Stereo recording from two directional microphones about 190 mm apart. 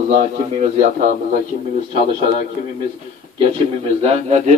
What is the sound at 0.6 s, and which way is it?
Speech, 40° right (ahead or behind).